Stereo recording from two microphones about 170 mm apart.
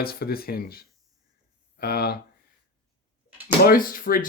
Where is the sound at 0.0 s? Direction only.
65° left (ahead or behind).